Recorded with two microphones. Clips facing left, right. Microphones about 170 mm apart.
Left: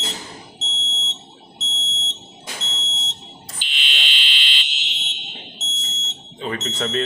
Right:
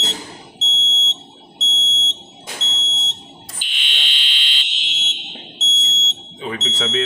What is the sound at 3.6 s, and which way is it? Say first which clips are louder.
Fire alarm: left 1 dB; 50° right (ahead or behind).